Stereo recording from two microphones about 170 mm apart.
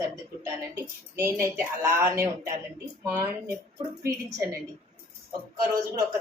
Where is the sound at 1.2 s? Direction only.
15° right (ahead or behind).